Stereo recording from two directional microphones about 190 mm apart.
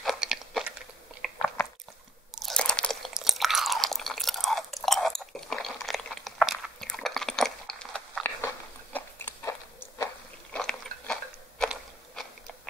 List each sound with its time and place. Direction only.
0.0 s crunch: centre (ahead or behind)
1.2 s chewing: centre (ahead or behind)
2.4 s chewing: 5° left (ahead or behind)
8.9 s biting: 10° left (ahead or behind)